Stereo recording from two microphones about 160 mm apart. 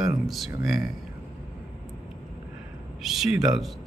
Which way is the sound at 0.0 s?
Centre (ahead or behind).